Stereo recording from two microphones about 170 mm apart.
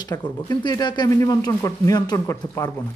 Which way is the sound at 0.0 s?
20° left (ahead or behind).